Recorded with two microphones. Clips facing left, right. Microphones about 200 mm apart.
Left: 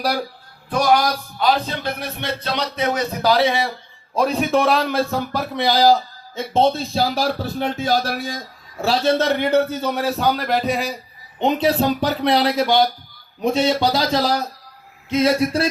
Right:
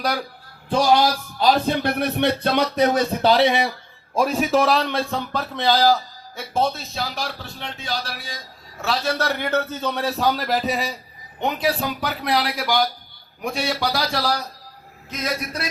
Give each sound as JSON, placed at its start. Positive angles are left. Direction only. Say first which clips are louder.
{"t": 0.7, "sound": "speech", "louder": "even", "side_deg": -25}
{"t": 1.5, "sound": "speech", "louder": "right 2 dB", "side_deg": -55}
{"t": 4.1, "sound": "a man's voice", "louder": "left 1 dB", "side_deg": -5}
{"t": 8.8, "sound": "a man's voice", "louder": "left 6 dB", "side_deg": 30}
{"t": 11.3, "sound": "speech", "louder": "left 5 dB", "side_deg": 20}